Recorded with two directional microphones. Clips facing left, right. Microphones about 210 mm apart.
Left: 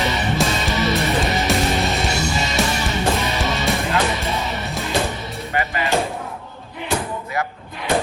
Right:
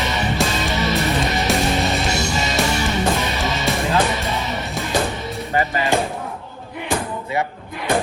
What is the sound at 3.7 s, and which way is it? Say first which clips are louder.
Music: right 3 dB; centre (ahead or behind).